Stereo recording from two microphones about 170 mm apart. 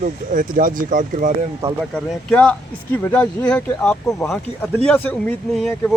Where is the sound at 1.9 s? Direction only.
5° left (ahead or behind).